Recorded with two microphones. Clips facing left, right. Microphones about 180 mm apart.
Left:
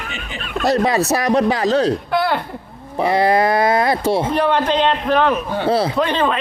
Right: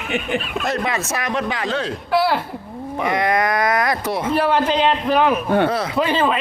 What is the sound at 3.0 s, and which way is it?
Speech, 30° left (ahead or behind).